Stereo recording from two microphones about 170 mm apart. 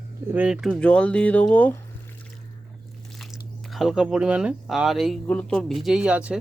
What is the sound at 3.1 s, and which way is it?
Biting, centre (ahead or behind).